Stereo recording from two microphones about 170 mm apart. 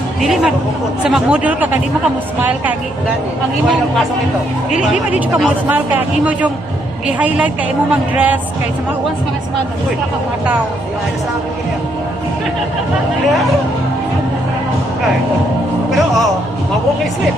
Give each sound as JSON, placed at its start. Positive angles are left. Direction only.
{"t": 0.2, "sound": "speech", "side_deg": 0}
{"t": 4.6, "sound": "speech", "side_deg": -5}